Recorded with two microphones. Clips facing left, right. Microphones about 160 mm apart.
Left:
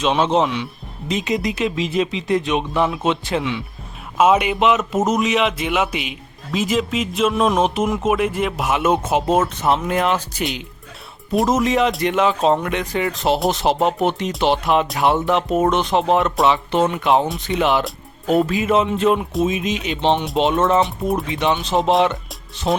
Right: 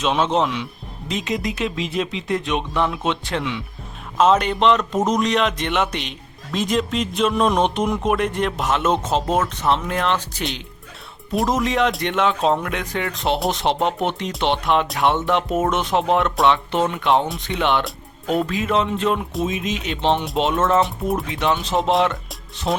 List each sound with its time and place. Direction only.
0.0 s speech: centre (ahead or behind)